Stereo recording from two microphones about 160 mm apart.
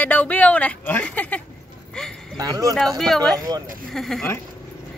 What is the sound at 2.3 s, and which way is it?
Speech, 25° right (ahead or behind).